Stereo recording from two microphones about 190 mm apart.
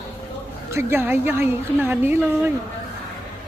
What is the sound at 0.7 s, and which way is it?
A woman's voice, 15° right (ahead or behind).